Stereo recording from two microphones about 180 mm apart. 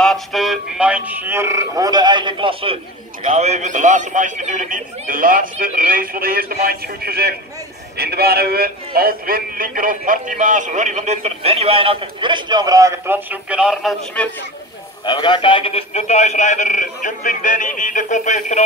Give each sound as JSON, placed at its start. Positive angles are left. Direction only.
{"t": 0.0, "sound": "a man's voice", "side_deg": 0}
{"t": 15.0, "sound": "a man's voice", "side_deg": 25}